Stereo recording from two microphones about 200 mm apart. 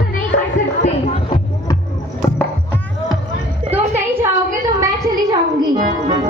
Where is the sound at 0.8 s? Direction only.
25° left (ahead or behind).